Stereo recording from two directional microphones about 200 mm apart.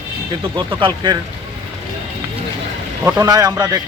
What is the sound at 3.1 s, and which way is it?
Speech, 15° right (ahead or behind).